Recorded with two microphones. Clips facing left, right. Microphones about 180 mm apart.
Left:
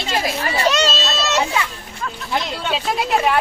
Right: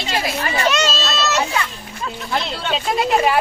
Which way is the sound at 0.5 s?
35° left (ahead or behind).